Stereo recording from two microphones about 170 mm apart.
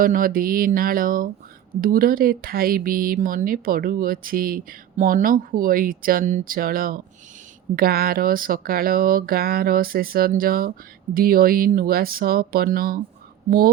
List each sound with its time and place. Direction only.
0.0 s speech: 55° right (ahead or behind)